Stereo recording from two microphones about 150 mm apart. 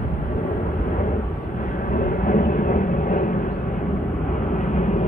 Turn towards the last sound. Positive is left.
turn(degrees=55)  # may be behind; listen again after turning